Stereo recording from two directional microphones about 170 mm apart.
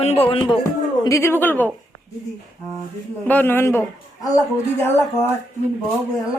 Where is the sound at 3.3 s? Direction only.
10° left (ahead or behind).